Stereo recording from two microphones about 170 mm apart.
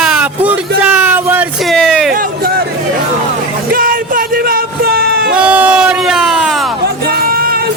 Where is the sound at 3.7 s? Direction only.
55° right (ahead or behind).